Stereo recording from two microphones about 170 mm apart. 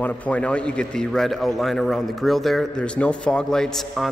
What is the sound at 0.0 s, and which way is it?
A man's voice, 10° left (ahead or behind).